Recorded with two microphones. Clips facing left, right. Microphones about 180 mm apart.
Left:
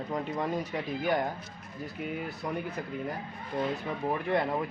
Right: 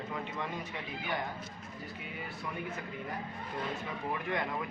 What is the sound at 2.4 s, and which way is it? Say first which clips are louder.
Speech: left 3 dB; 35° left (ahead or behind).